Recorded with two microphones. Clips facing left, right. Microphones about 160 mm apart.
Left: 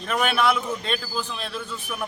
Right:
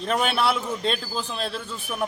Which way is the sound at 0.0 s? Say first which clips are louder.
Left 1 dB; 30° right (ahead or behind).